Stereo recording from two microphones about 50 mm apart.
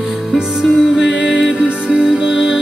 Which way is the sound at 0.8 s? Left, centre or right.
Right.